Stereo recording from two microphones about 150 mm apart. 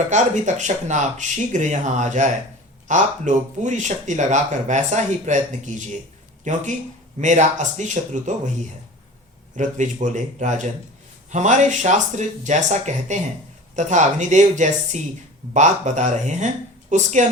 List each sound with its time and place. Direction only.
0.1 s speech: 55° right (ahead or behind)
9.6 s speech: 55° right (ahead or behind)